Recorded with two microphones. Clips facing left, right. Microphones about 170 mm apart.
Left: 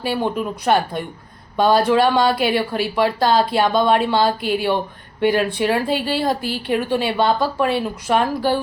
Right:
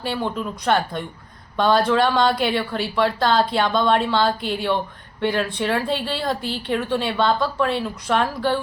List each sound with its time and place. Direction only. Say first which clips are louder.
0.0 s a woman's voice: left 4 dB; 10° left (ahead or behind)